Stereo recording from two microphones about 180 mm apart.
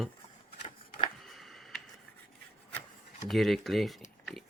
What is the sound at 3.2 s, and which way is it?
Speech, centre (ahead or behind).